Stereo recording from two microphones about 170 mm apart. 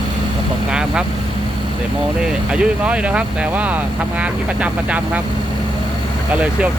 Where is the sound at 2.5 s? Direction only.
5° right (ahead or behind).